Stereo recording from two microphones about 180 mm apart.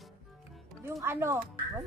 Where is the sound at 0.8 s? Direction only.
15° right (ahead or behind).